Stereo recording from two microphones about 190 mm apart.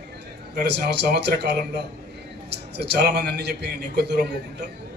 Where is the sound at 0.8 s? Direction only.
60° right (ahead or behind).